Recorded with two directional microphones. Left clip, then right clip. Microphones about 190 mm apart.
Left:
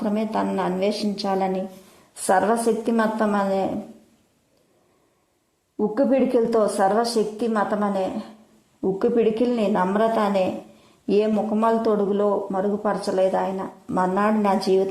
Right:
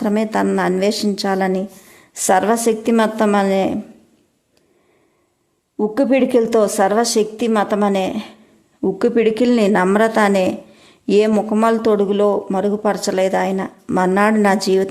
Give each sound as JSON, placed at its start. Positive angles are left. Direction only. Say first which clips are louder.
{"t": 0.0, "sound": "a woman's voice", "louder": "right 6 dB", "side_deg": -15}
{"t": 5.7, "sound": "a woman's voice", "louder": "right 4 dB", "side_deg": -15}